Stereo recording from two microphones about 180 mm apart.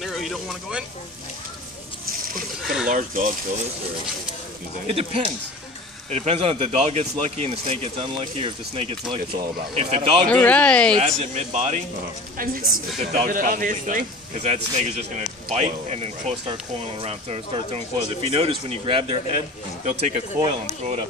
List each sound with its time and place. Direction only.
0.0 s speech: centre (ahead or behind)
2.6 s speech: 5° right (ahead or behind)
2.9 s speech: 45° right (ahead or behind)
4.8 s speech: 30° right (ahead or behind)
10.2 s speech: 10° left (ahead or behind)
11.0 s speech: 35° right (ahead or behind)
13.1 s speech: 45° right (ahead or behind)